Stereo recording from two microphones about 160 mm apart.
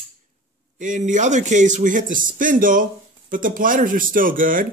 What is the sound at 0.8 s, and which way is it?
A man's voice, 50° right (ahead or behind).